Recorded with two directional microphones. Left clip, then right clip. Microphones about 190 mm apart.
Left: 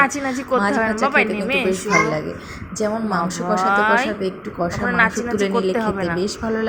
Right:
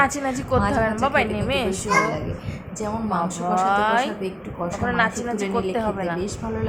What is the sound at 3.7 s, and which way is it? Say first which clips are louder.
Speech: left 5 dB; centre (ahead or behind).